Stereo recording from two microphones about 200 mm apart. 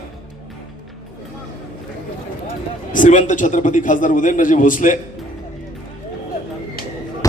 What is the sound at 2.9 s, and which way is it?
A man's voice, 40° left (ahead or behind).